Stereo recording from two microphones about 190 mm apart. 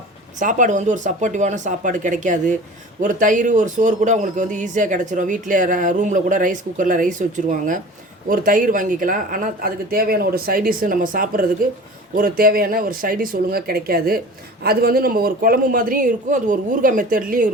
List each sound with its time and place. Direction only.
0.3 s a man's voice: 40° right (ahead or behind)